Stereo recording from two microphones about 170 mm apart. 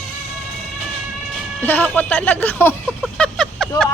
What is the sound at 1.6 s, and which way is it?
A woman's voice, 10° left (ahead or behind).